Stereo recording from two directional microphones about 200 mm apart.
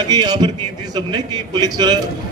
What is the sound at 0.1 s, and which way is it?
A man's voice, 20° right (ahead or behind).